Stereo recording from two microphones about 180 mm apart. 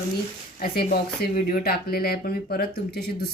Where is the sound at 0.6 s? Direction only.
55° left (ahead or behind).